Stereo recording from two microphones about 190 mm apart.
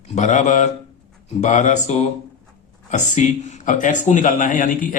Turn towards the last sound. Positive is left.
turn(degrees=45)  # may be behind; listen again after turning